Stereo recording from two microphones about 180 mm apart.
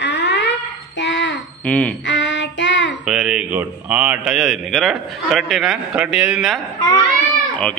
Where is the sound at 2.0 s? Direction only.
90° left.